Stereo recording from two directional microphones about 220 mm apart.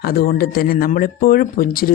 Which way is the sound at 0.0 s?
40° left (ahead or behind).